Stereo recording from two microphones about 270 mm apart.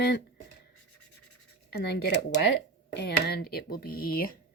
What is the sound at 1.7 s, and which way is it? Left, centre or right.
Speech, left.